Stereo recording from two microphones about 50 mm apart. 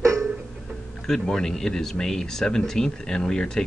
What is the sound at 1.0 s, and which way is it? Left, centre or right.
Speech, centre.